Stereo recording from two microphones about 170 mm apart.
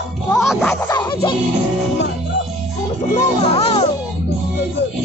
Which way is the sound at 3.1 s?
35° left (ahead or behind).